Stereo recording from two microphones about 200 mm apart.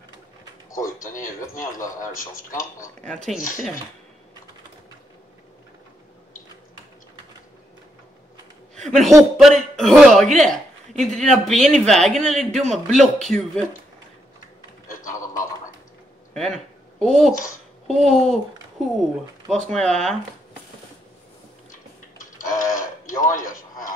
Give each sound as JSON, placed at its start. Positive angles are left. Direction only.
{"t": 1.0, "sound": "speech", "side_deg": 40}
{"t": 3.0, "sound": "speech", "side_deg": 5}
{"t": 3.3, "sound": "speech", "side_deg": 40}
{"t": 8.7, "sound": "speech", "side_deg": 0}
{"t": 14.9, "sound": "a sound", "side_deg": 40}
{"t": 16.3, "sound": "speech", "side_deg": 0}
{"t": 19.5, "sound": "speech", "side_deg": 0}
{"t": 22.2, "sound": "a sound", "side_deg": 40}